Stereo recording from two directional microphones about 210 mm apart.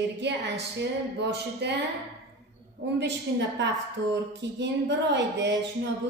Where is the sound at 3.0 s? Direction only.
60° right (ahead or behind).